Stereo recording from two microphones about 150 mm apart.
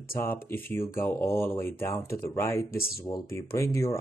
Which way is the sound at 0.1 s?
15° left (ahead or behind).